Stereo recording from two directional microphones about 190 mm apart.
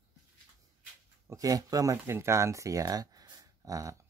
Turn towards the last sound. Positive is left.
turn(degrees=-15)  # may be behind; listen again after turning